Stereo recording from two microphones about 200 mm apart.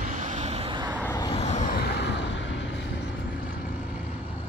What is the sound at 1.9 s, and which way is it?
Vehicle, 55° left (ahead or behind).